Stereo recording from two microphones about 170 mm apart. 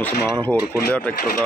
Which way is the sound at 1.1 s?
65° left (ahead or behind).